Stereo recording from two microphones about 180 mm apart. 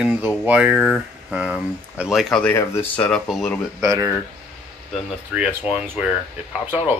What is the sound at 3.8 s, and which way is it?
Speech, 15° right (ahead or behind).